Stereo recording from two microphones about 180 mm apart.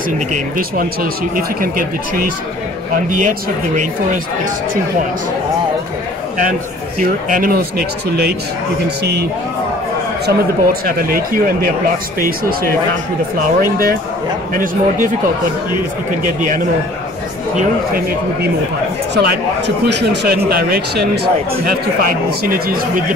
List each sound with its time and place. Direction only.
0.3 s speech: 55° right (ahead or behind)
7.0 s speech: 50° right (ahead or behind)
10.2 s a man's voice: 55° right (ahead or behind)
13.6 s speech: 55° right (ahead or behind)
19.1 s a man's voice: 70° right (ahead or behind); by 23.0 s 50° right (ahead or behind)